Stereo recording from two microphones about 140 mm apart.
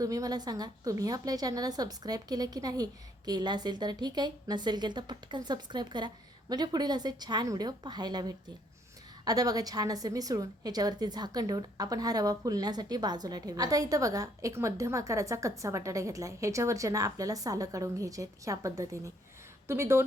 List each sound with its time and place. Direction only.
0.0 s a woman's voice: 25° right (ahead or behind)